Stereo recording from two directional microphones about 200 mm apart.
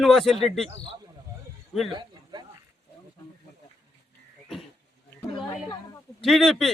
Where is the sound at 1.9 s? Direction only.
20° right (ahead or behind).